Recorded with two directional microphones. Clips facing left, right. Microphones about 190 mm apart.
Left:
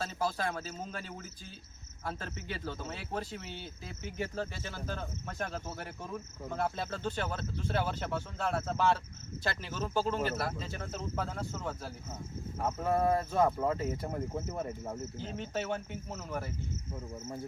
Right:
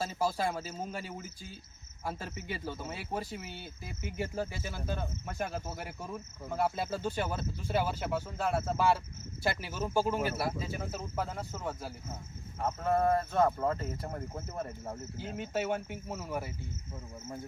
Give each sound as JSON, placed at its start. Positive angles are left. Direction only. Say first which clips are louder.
{"t": 0.0, "sound": "speech", "louder": "right 2 dB", "side_deg": -10}